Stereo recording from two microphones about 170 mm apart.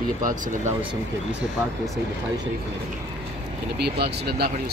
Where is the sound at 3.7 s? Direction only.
70° right (ahead or behind).